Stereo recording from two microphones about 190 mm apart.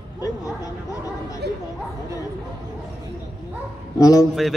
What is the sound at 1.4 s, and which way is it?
Speech, 60° right (ahead or behind).